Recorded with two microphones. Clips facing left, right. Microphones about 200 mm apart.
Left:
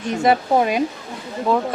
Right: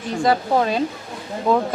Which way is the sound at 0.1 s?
20° left (ahead or behind).